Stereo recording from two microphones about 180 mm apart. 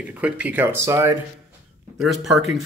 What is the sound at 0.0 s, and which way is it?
Speech, 10° right (ahead or behind).